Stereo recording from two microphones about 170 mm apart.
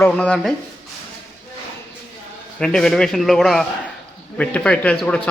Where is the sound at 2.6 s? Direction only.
5° left (ahead or behind).